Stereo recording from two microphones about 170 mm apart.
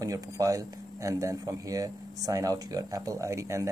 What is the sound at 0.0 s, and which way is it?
Speech, 20° right (ahead or behind).